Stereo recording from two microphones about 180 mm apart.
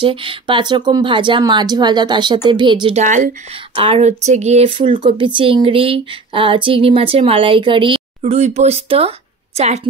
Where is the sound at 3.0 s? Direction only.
45° right (ahead or behind).